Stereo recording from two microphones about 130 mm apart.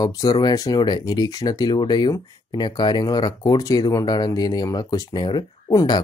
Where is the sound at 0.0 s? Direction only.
30° left (ahead or behind).